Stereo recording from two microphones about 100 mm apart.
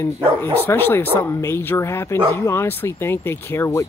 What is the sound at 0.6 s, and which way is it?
Speech, 20° left (ahead or behind).